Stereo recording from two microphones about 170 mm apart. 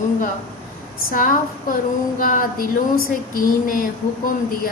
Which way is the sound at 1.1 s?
55° left (ahead or behind).